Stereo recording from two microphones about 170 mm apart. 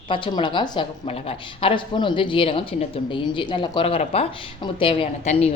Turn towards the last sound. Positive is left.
turn(degrees=35)  # may be behind; listen again after turning